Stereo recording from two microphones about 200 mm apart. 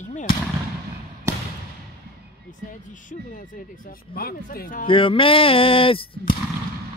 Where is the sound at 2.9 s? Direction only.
40° left (ahead or behind).